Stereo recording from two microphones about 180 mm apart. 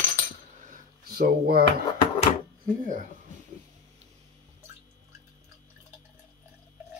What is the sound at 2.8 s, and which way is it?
Speech, 45° right (ahead or behind).